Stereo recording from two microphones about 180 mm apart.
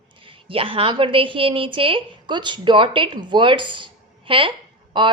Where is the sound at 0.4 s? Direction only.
30° right (ahead or behind).